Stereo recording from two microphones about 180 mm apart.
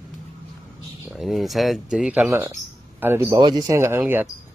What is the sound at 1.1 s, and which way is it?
Speech, centre (ahead or behind).